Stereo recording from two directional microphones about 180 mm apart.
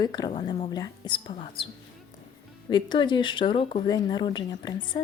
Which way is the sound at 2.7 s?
25° left (ahead or behind).